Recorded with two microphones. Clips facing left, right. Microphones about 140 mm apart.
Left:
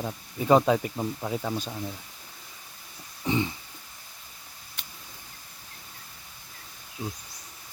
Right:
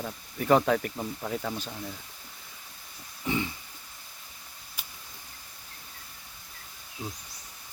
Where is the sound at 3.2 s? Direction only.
20° left (ahead or behind).